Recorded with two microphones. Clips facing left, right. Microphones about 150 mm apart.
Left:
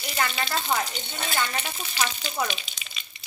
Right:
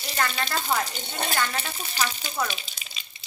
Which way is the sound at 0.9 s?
40° right (ahead or behind).